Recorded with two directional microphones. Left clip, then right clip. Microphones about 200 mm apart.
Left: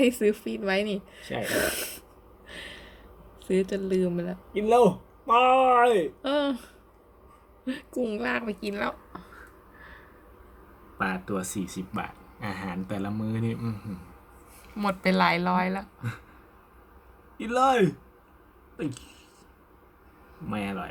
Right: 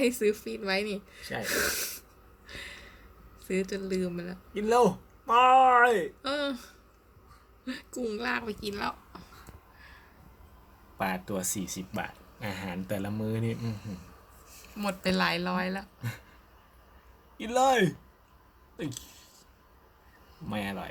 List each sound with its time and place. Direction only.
0.0 s speech: 30° left (ahead or behind)
2.5 s a sound: 25° left (ahead or behind)
3.4 s speech: 25° left (ahead or behind)
4.6 s a man's voice: 5° left (ahead or behind)
6.2 s speech: 25° left (ahead or behind)
10.9 s speech: 10° right (ahead or behind)
14.8 s speech: 20° left (ahead or behind)
17.3 s speech: 10° right (ahead or behind)
20.5 s speech: 10° right (ahead or behind)